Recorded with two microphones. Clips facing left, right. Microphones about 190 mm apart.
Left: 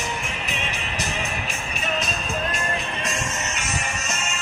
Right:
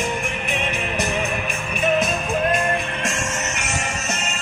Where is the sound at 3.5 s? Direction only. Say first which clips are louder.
Right 3 dB; 70° right (ahead or behind).